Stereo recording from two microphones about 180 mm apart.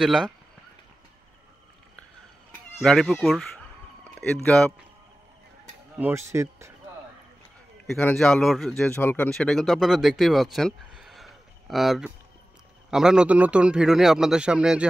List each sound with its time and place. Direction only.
0.0 s speech: centre (ahead or behind)
2.8 s speech: centre (ahead or behind)
5.9 s speech: 10° right (ahead or behind)
7.8 s speech: 5° left (ahead or behind)